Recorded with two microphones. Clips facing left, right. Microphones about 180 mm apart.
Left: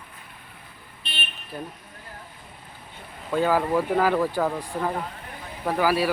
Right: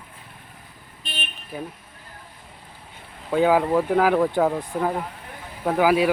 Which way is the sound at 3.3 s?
15° right (ahead or behind).